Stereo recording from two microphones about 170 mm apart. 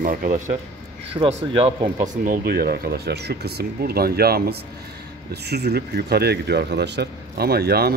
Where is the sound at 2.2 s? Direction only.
65° right (ahead or behind).